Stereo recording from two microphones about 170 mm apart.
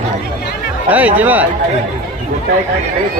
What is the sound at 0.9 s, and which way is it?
Speech, 10° right (ahead or behind).